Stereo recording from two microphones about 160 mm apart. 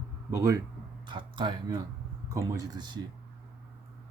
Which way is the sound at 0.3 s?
20° right (ahead or behind).